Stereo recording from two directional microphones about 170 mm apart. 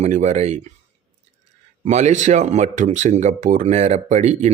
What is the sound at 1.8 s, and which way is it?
A man's voice, 40° right (ahead or behind).